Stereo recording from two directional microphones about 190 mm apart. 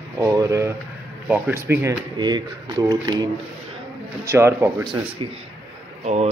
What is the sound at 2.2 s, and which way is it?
Speech, 20° right (ahead or behind).